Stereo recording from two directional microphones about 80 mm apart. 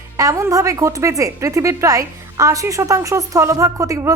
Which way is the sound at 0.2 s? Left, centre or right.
Right.